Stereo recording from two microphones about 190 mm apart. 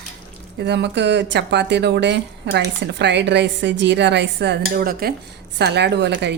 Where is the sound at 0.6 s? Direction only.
60° right (ahead or behind).